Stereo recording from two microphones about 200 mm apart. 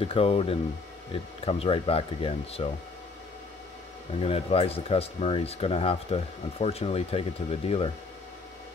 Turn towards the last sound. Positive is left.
turn(degrees=30)  # may be behind; listen again after turning